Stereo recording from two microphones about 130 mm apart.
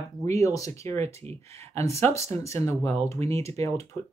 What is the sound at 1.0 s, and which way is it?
Speech, 55° right (ahead or behind).